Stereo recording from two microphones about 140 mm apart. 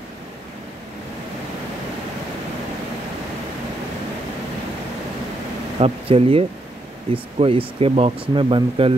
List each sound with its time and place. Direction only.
5.8 s speech: 45° right (ahead or behind)